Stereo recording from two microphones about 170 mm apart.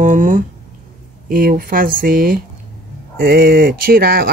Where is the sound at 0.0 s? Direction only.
50° right (ahead or behind).